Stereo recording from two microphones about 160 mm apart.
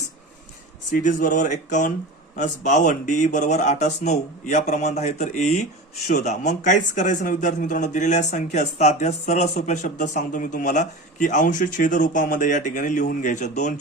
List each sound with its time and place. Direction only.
1.0 s speech: 55° left (ahead or behind)